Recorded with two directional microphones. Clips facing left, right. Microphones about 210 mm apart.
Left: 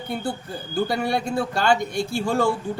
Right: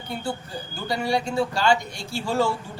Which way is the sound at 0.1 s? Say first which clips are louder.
Left 2 dB; 55° left (ahead or behind).